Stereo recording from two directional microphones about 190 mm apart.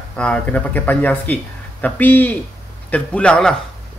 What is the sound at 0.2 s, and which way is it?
A man's voice, 5° left (ahead or behind).